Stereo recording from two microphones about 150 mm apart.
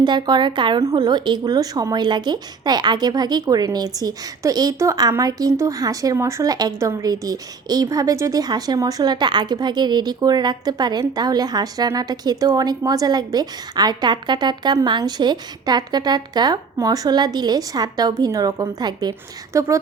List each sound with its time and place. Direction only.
0.0 s a woman's voice: 30° right (ahead or behind)